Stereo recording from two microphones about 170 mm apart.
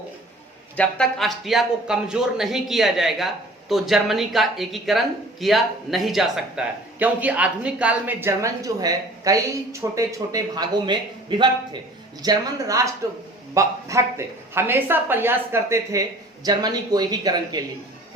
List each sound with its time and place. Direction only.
0.8 s speech: 5° left (ahead or behind); by 17.6 s 25° right (ahead or behind)